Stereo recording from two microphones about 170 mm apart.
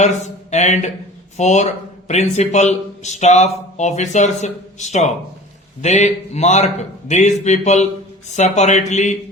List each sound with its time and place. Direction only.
0.0 s a man's voice: 45° left (ahead or behind)